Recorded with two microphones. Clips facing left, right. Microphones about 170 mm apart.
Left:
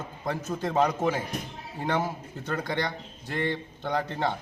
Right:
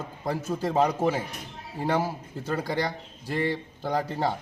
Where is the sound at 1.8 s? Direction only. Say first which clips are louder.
Right 2 dB; 35° right (ahead or behind).